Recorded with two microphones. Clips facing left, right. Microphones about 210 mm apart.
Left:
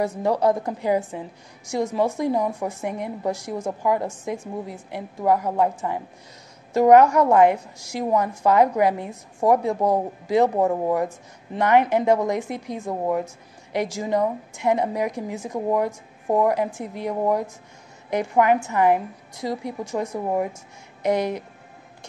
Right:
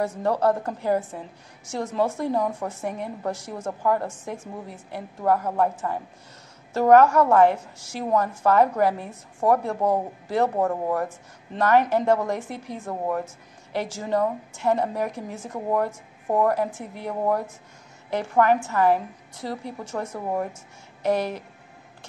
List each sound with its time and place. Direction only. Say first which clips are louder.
0.0 s a woman's voice: left 2 dB; 10° left (ahead or behind)